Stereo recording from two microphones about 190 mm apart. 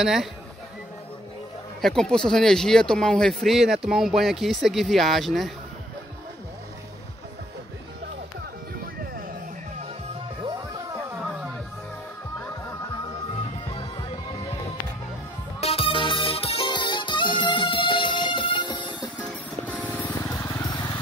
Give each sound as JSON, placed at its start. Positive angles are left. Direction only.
{"t": 0.0, "sound": "speech", "side_deg": 0}
{"t": 1.8, "sound": "speech", "side_deg": 5}
{"t": 12.4, "sound": "music", "side_deg": 10}
{"t": 15.6, "sound": "music", "side_deg": 30}
{"t": 19.6, "sound": "music", "side_deg": 5}